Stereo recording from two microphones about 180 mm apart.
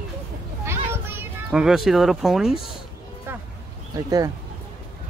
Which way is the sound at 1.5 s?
Centre (ahead or behind).